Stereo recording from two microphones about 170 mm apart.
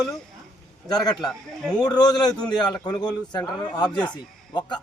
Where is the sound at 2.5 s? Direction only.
25° left (ahead or behind).